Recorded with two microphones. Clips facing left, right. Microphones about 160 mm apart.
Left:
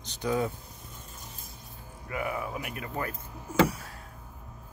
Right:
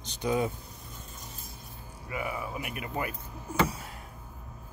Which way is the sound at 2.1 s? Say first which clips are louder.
Left 2 dB; 5° right (ahead or behind).